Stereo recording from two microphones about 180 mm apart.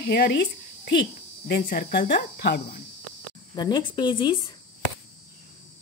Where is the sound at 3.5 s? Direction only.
25° left (ahead or behind).